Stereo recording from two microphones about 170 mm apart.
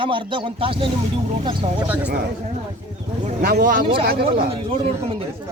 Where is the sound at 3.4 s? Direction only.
65° right (ahead or behind).